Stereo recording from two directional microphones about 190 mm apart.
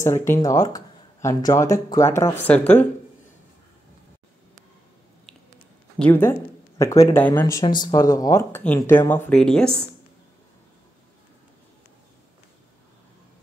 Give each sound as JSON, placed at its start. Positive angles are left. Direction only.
{"t": 0.0, "sound": "speech", "side_deg": 15}
{"t": 5.9, "sound": "speech", "side_deg": 10}